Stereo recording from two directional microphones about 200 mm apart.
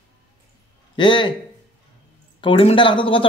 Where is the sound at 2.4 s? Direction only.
25° left (ahead or behind).